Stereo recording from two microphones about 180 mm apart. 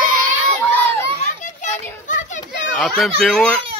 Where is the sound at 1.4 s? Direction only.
45° left (ahead or behind).